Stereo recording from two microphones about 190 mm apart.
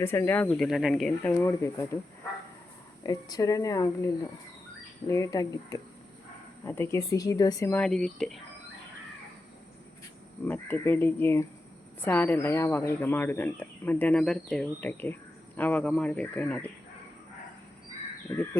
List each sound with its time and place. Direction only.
0.0 s speech: 15° left (ahead or behind)
0.4 s speech: centre (ahead or behind)
3.0 s speech: 20° left (ahead or behind); by 8.4 s centre (ahead or behind)
10.4 s speech: 10° left (ahead or behind)
18.3 s speech: 15° left (ahead or behind)